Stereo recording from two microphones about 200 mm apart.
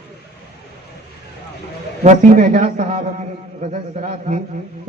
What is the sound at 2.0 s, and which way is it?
A man's voice, 40° right (ahead or behind).